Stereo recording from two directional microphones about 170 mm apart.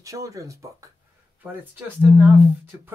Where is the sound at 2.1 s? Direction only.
15° right (ahead or behind).